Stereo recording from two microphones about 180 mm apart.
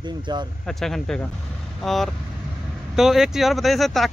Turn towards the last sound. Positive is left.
turn(degrees=0)  # may be behind; listen again after turning